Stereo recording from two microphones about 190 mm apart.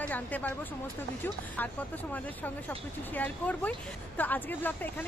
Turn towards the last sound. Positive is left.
turn(degrees=10)  # may be behind; listen again after turning